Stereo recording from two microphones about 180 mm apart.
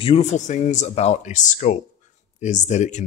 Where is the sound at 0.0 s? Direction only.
35° left (ahead or behind).